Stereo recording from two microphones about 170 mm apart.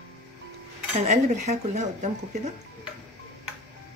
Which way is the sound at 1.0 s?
40° right (ahead or behind).